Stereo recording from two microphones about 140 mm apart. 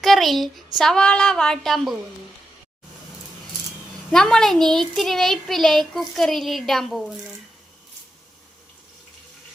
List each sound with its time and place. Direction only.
0.0 s speech: centre (ahead or behind)
4.1 s speech: 5° left (ahead or behind)